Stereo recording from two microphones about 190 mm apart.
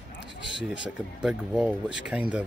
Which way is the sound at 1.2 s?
5° right (ahead or behind).